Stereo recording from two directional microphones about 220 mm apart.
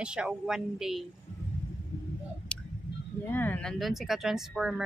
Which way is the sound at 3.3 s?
10° left (ahead or behind).